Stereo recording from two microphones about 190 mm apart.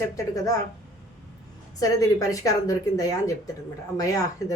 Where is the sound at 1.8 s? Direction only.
15° left (ahead or behind).